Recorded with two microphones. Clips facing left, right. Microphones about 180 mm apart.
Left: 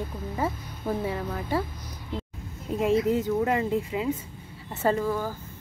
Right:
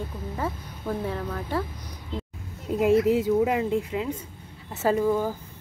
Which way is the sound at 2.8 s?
10° right (ahead or behind).